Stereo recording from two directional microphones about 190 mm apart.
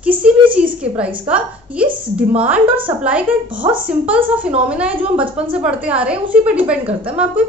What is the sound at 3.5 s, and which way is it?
Speech, 25° right (ahead or behind).